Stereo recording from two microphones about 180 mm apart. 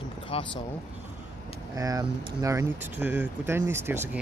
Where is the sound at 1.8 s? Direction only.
20° right (ahead or behind).